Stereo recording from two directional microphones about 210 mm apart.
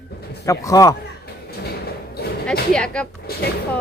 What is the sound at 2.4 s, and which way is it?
Speech, 5° left (ahead or behind).